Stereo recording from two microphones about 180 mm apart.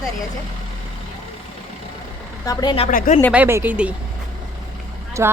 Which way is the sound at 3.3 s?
10° right (ahead or behind).